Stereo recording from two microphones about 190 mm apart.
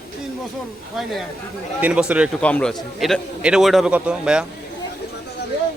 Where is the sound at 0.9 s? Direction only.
Centre (ahead or behind).